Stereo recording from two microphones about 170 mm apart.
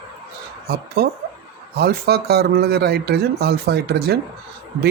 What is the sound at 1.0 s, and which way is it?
Speech, 70° right (ahead or behind).